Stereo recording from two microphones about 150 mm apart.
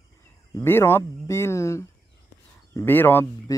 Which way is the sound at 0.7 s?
15° left (ahead or behind).